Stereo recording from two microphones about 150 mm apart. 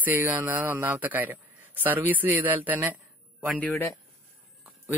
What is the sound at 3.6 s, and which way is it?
Speech, 15° left (ahead or behind).